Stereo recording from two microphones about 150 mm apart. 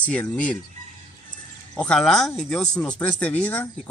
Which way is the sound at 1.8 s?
5° left (ahead or behind).